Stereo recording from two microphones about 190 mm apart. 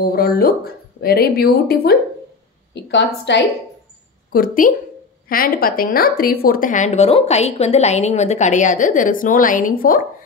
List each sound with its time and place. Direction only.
0.0 s a woman's voice: 50° left (ahead or behind)
2.7 s a woman's voice: 65° left (ahead or behind)
4.3 s a woman's voice: 50° left (ahead or behind)